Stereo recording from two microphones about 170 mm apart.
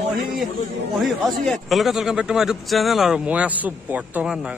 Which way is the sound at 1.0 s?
Centre (ahead or behind).